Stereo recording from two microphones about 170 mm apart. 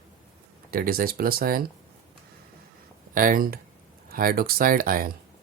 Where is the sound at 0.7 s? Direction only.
60° right (ahead or behind).